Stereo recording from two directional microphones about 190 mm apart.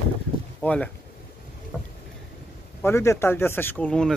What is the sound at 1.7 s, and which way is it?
Boat, 5° left (ahead or behind).